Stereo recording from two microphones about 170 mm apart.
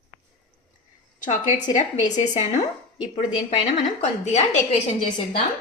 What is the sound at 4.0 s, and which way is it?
Speech, 40° left (ahead or behind).